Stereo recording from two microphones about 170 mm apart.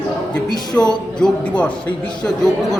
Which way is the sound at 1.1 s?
5° left (ahead or behind).